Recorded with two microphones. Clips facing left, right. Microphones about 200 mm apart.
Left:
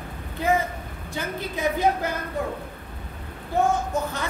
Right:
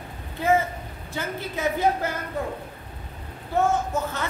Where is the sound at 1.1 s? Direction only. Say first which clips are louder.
Even; 15° left (ahead or behind).